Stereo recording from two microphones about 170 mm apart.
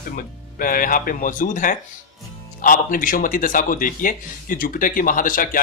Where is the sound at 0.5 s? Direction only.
55° left (ahead or behind).